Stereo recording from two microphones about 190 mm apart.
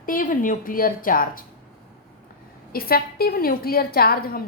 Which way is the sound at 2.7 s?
50° left (ahead or behind).